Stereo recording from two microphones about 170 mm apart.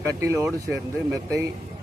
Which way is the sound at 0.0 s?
20° right (ahead or behind).